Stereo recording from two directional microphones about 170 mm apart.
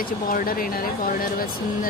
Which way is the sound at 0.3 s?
55° left (ahead or behind).